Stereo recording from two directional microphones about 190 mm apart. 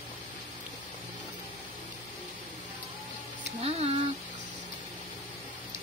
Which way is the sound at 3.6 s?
30° right (ahead or behind).